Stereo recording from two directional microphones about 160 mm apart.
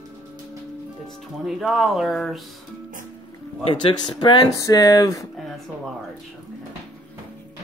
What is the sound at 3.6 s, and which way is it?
Speech, 30° left (ahead or behind).